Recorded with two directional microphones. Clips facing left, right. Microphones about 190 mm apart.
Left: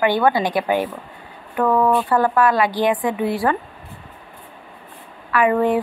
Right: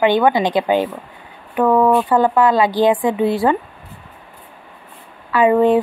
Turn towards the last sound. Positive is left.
turn(degrees=-25)  # may be behind; listen again after turning